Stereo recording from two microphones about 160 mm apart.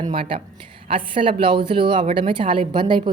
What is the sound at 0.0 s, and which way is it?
A woman's voice, 35° right (ahead or behind).